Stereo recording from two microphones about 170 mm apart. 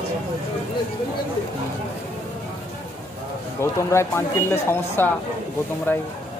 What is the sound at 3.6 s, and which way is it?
Speech, 15° left (ahead or behind).